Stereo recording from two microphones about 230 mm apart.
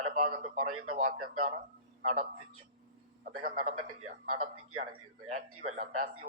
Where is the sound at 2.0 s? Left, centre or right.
Right.